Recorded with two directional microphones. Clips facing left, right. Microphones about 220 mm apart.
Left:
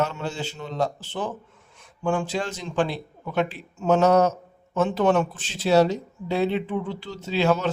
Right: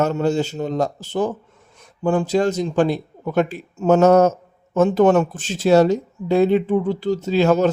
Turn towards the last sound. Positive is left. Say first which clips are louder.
# right 6 dB
turn(degrees=-45)  # may be behind; listen again after turning